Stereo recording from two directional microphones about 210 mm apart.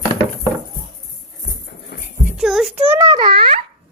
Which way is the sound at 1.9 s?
50° left (ahead or behind).